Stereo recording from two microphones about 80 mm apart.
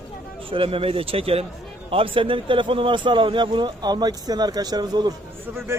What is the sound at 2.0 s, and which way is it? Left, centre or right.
Speech, right.